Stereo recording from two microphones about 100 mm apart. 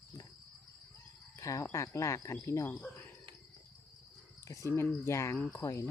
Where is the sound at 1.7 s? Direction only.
30° left (ahead or behind).